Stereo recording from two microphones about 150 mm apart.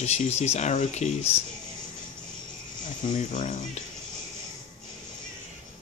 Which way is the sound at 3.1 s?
55° left (ahead or behind).